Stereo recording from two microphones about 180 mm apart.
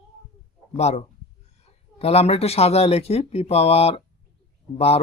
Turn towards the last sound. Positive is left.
turn(degrees=35)  # may be behind; listen again after turning